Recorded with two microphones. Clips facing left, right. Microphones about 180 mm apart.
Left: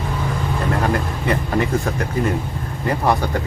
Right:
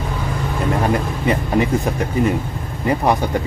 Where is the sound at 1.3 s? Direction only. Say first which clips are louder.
Right 2 dB; 20° right (ahead or behind).